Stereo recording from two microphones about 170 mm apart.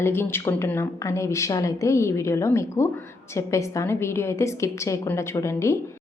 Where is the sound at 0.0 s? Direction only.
15° left (ahead or behind).